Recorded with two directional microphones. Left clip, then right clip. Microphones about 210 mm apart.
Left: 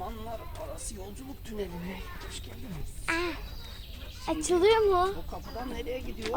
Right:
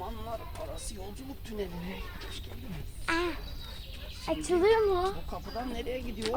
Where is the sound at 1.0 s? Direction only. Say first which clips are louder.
Even; 15° left (ahead or behind).